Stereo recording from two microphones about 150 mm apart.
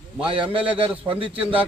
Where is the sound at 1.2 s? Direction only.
10° right (ahead or behind).